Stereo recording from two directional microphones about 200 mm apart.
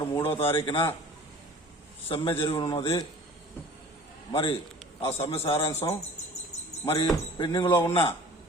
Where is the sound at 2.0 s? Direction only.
25° left (ahead or behind).